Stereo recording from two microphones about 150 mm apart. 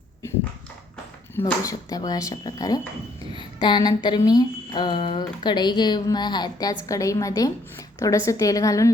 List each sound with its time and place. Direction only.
1.6 s speech: 25° left (ahead or behind)